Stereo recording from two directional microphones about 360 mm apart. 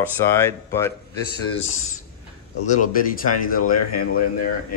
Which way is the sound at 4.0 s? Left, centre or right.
Left.